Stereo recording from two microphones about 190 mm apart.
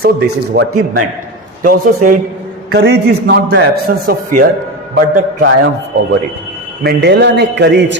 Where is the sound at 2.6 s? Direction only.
65° right (ahead or behind).